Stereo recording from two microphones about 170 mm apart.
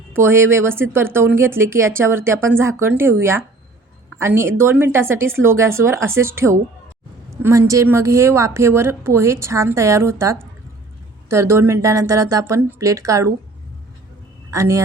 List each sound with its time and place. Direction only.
0.1 s speech: 15° right (ahead or behind)
14.5 s speech: 15° right (ahead or behind)